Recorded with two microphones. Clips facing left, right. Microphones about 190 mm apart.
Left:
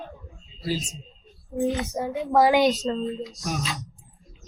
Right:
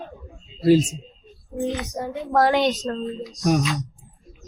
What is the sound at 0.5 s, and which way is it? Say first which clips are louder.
Speech: right 13 dB; 55° right (ahead or behind).